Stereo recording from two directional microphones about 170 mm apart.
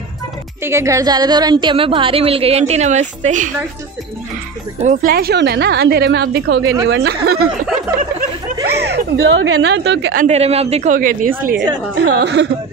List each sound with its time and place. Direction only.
0.7 s a woman's voice: 15° right (ahead or behind); by 3.5 s 50° right (ahead or behind)
4.7 s a woman's voice: 45° right (ahead or behind)
5.1 s a woman's voice: 70° right (ahead or behind); by 6.7 s 90° right
6.9 s speech: 75° right (ahead or behind)
8.6 s speech: 75° right (ahead or behind)
10.1 s a woman's voice: 40° right (ahead or behind); by 11.6 s 55° right (ahead or behind)
12.2 s speech: 90° right